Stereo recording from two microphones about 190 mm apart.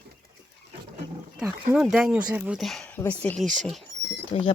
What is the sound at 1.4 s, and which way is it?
Speech, 5° right (ahead or behind).